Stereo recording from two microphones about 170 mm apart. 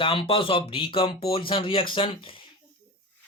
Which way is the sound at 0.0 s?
30° left (ahead or behind).